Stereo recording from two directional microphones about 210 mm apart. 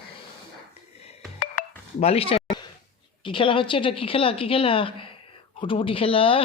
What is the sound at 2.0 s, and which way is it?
Speech, 30° left (ahead or behind).